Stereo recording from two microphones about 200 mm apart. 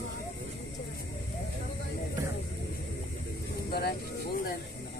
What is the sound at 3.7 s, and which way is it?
Vehicle, 50° left (ahead or behind).